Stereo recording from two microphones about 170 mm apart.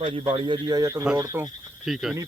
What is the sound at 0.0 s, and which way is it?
A man's voice, 30° right (ahead or behind).